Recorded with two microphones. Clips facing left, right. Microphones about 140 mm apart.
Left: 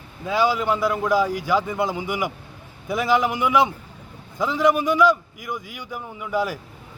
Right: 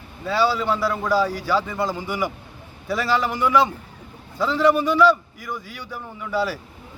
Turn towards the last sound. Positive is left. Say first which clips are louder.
# even
turn(degrees=15)  # may be behind; listen again after turning